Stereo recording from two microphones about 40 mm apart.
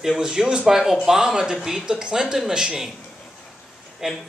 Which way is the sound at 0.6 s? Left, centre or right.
Centre.